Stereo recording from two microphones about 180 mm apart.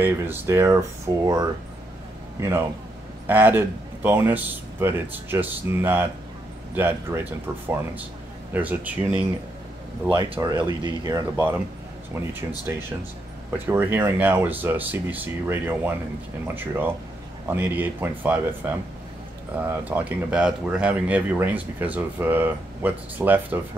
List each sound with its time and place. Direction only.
0.0 s speech: 15° right (ahead or behind)
3.3 s speech: 10° right (ahead or behind)
10.1 s speech: 25° right (ahead or behind); by 23.6 s 10° right (ahead or behind)